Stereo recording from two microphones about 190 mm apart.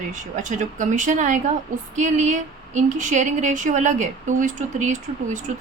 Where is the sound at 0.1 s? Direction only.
40° right (ahead or behind).